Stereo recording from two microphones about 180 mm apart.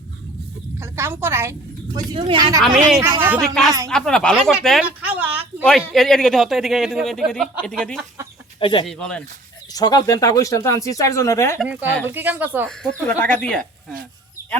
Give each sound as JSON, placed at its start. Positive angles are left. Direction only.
{"t": 0.8, "sound": "a woman's voice", "side_deg": -15}
{"t": 2.0, "sound": "speech", "side_deg": -30}
{"t": 3.0, "sound": "a woman's voice", "side_deg": -10}
{"t": 3.4, "sound": "a woman's voice", "side_deg": 0}
{"t": 5.9, "sound": "a woman's voice", "side_deg": 0}
{"t": 8.5, "sound": "speech", "side_deg": 30}
{"t": 8.9, "sound": "a woman's voice", "side_deg": 5}
{"t": 9.7, "sound": "speech", "side_deg": 20}
{"t": 11.6, "sound": "a woman's voice", "side_deg": -10}
{"t": 12.6, "sound": "a woman's voice", "side_deg": 5}